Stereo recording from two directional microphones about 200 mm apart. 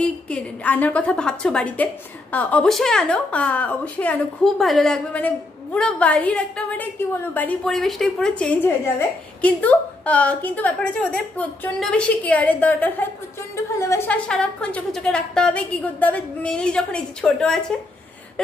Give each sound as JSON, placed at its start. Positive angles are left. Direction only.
{"t": 0.0, "sound": "a woman's voice", "side_deg": 5}